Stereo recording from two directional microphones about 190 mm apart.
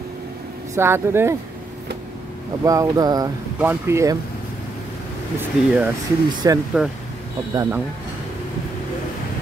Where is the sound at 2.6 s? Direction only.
20° right (ahead or behind).